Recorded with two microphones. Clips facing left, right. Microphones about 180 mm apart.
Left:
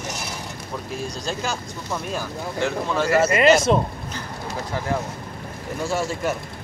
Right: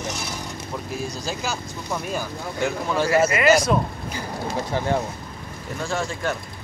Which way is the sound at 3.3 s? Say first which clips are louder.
Left 2 dB; 30° left (ahead or behind).